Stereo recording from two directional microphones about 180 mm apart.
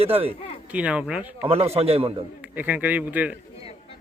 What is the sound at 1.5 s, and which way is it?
Speech, 35° right (ahead or behind).